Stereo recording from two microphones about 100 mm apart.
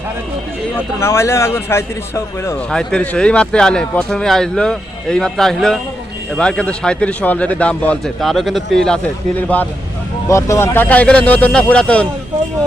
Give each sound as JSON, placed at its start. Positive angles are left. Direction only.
{"t": 0.9, "sound": "speech", "side_deg": 25}
{"t": 2.6, "sound": "speech", "side_deg": 10}
{"t": 8.0, "sound": "speech", "side_deg": 0}
{"t": 9.5, "sound": "speech", "side_deg": 15}
{"t": 10.2, "sound": "speech", "side_deg": 30}